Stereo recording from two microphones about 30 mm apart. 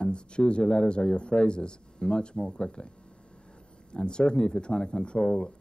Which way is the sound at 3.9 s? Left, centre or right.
Left.